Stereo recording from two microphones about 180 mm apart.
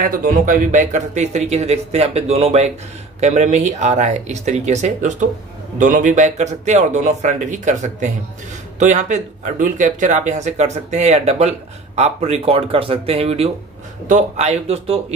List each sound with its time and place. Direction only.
0.0 s speech: 50° right (ahead or behind); by 15.1 s 35° right (ahead or behind)